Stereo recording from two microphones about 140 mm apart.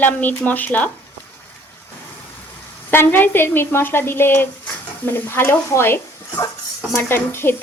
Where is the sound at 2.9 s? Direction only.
15° left (ahead or behind).